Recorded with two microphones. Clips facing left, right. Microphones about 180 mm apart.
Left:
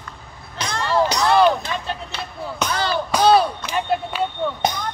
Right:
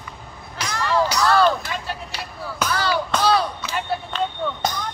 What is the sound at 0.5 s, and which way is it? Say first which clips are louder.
Music: left 1 dB; 30° left (ahead or behind).